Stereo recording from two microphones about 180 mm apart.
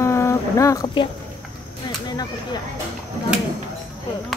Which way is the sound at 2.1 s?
20° left (ahead or behind).